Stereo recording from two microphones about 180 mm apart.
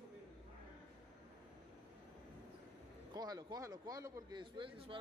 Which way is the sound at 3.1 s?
20° right (ahead or behind).